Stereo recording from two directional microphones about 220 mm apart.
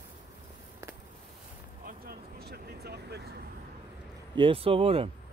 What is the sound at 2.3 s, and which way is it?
Vehicle, 45° right (ahead or behind).